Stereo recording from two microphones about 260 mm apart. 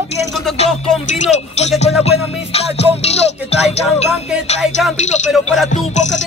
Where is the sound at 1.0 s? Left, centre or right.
Left.